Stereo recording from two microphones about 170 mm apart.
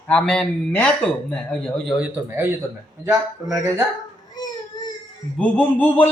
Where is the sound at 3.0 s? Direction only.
20° right (ahead or behind).